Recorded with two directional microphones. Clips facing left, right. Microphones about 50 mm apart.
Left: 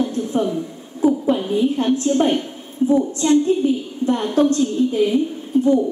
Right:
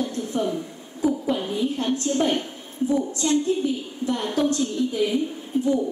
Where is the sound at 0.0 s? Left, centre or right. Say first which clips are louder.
Left 5 dB; left.